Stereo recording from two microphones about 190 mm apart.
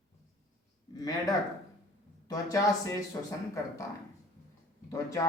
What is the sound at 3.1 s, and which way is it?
Speech, 20° left (ahead or behind).